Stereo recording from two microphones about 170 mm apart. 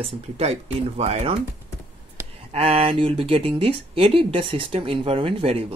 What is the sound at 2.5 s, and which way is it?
Speech, 35° right (ahead or behind).